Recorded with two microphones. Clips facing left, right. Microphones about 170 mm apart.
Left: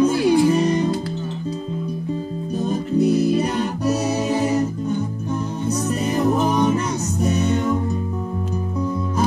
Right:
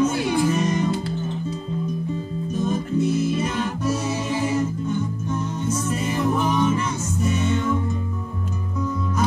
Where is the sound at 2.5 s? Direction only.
35° left (ahead or behind).